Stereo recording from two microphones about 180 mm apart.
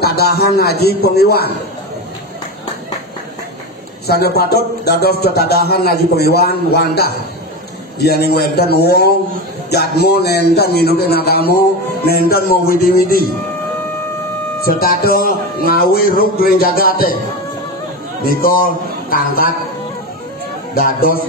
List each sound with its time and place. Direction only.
0.0 s speech: 60° left (ahead or behind)
4.1 s speech: 60° left (ahead or behind)
14.6 s speech: 55° left (ahead or behind)
18.2 s a man's voice: 55° left (ahead or behind)
20.7 s a man's voice: 55° left (ahead or behind)